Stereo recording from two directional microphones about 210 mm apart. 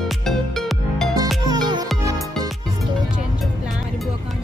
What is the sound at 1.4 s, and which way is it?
Music, 20° right (ahead or behind).